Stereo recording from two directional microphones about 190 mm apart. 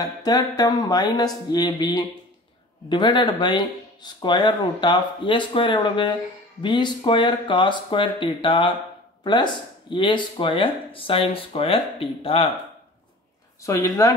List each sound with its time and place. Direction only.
0.0 s speech: 20° left (ahead or behind)
13.6 s speech: 15° left (ahead or behind)